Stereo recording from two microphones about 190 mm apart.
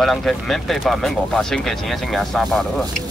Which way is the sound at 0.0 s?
Centre (ahead or behind).